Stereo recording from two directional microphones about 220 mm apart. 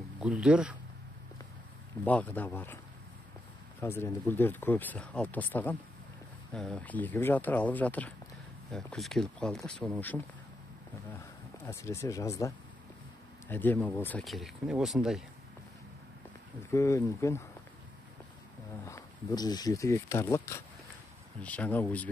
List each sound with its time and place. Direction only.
0.2 s speech: 5° right (ahead or behind)
2.0 s speech: 5° left (ahead or behind)
3.8 s speech: 10° left (ahead or behind)
16.7 s speech: 15° left (ahead or behind)
18.9 s speech: 15° left (ahead or behind)